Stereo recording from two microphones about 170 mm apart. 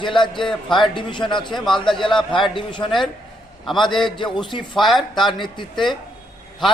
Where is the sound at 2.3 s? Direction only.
30° left (ahead or behind).